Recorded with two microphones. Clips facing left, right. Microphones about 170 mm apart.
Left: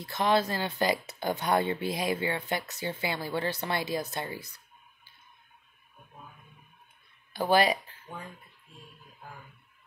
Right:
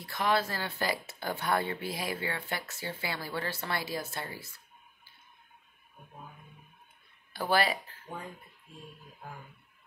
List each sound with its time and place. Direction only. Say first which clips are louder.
0.0 s speech: left 3 dB; 20° left (ahead or behind)
7.3 s speech: left 4 dB; 20° left (ahead or behind)